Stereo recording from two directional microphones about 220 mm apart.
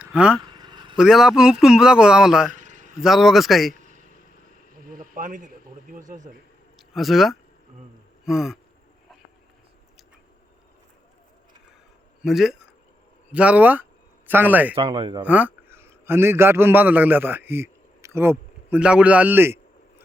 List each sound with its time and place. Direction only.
0.0 s speech: 5° right (ahead or behind)
0.5 s vehicle: 20° right (ahead or behind)
0.9 s a man's voice: centre (ahead or behind)
2.5 s a sound: 35° right (ahead or behind)
3.0 s a man's voice: centre (ahead or behind)
4.7 s a sound: 40° right (ahead or behind)
5.9 s speech: 35° right (ahead or behind)
6.7 s speech: centre (ahead or behind)
8.2 s a sound: centre (ahead or behind)
12.2 s a man's voice: centre (ahead or behind)
14.8 s speech: 25° right (ahead or behind)
15.2 s a man's voice: 5° right (ahead or behind)